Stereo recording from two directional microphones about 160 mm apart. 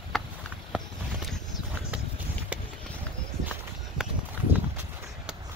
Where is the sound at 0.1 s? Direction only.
Centre (ahead or behind).